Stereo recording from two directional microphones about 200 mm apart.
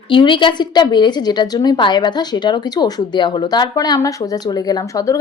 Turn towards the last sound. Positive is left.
turn(degrees=15)  # may be behind; listen again after turning